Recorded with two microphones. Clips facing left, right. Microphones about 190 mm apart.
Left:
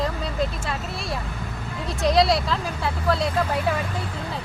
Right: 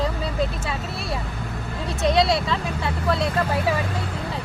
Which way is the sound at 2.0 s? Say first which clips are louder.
Even; centre (ahead or behind).